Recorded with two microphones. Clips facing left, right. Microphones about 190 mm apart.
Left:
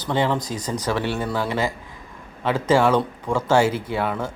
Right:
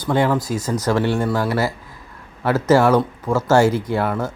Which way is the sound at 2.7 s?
10° right (ahead or behind).